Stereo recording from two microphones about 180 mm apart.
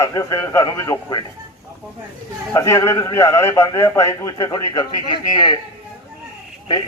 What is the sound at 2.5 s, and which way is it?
A man's voice, 15° left (ahead or behind).